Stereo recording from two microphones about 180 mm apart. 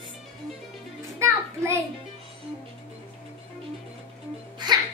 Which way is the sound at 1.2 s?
15° right (ahead or behind).